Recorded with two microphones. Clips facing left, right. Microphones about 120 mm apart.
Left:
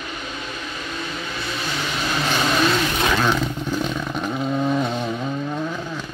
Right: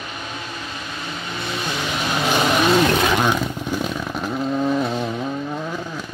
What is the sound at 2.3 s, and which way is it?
Vehicle, 20° right (ahead or behind).